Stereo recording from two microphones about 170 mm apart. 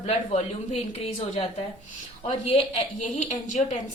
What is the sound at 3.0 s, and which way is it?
Speech, 45° left (ahead or behind).